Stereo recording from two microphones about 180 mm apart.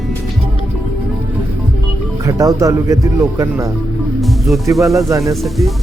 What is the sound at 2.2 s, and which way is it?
Speech, 20° right (ahead or behind).